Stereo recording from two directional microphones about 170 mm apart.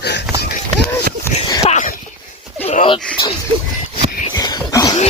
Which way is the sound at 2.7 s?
35° left (ahead or behind).